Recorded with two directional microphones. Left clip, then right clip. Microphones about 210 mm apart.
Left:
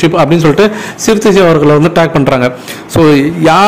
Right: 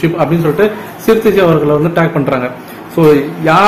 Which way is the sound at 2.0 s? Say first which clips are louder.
Left 4 dB; 50° left (ahead or behind).